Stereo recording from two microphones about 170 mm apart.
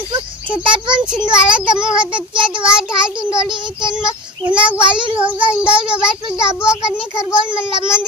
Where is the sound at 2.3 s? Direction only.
30° right (ahead or behind).